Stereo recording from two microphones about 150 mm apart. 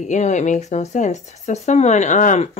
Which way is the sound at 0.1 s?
50° left (ahead or behind).